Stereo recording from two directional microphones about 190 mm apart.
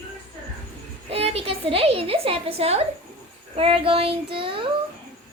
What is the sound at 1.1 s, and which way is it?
A woman's voice, 30° right (ahead or behind).